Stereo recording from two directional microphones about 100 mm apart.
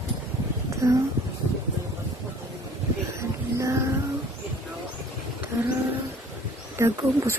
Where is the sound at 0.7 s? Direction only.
30° right (ahead or behind).